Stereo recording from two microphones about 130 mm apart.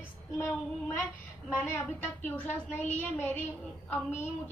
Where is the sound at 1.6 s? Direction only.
15° left (ahead or behind).